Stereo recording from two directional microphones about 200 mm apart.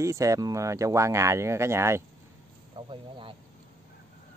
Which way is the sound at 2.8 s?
25° right (ahead or behind).